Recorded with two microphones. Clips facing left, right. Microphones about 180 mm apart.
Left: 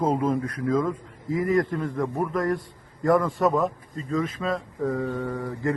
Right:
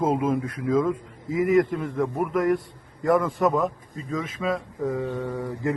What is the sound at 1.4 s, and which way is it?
Speech, 20° right (ahead or behind).